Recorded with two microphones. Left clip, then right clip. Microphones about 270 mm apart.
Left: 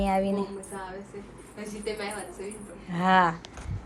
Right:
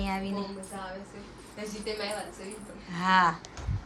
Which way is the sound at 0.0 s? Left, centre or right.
Centre.